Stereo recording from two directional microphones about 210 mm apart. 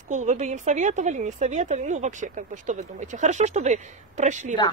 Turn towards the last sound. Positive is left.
turn(degrees=-35)  # may be behind; listen again after turning